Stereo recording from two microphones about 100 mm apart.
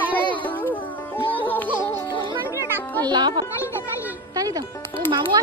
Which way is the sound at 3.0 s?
50° right (ahead or behind).